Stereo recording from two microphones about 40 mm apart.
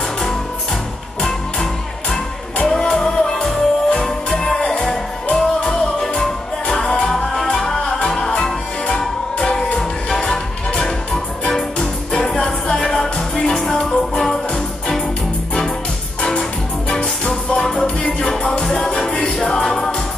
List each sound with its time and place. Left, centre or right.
1.2 s music: centre
12.1 s music: centre
12.7 s music: centre
17.6 s music: centre